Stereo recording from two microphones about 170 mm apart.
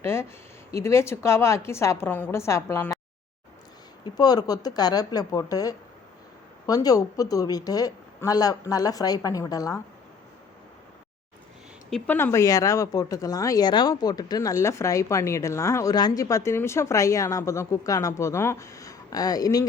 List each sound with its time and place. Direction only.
0.0 s a woman's voice: 15° left (ahead or behind)
4.0 s speech: 25° left (ahead or behind)
11.9 s speech: 5° left (ahead or behind)